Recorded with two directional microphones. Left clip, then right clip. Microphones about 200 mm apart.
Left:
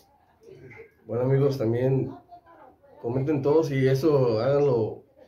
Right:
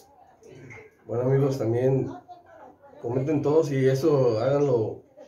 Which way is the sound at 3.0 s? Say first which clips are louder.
Even; 20° left (ahead or behind).